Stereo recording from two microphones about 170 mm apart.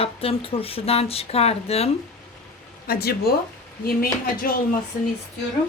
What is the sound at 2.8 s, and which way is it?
Speech, 65° left (ahead or behind).